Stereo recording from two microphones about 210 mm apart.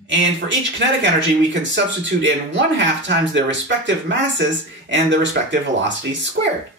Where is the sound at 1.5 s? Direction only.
60° right (ahead or behind).